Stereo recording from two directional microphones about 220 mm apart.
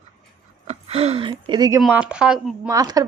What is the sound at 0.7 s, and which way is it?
Speech, 30° right (ahead or behind).